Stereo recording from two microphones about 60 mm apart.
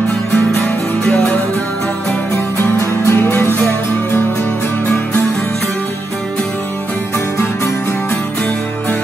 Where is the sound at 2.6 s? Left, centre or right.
Left.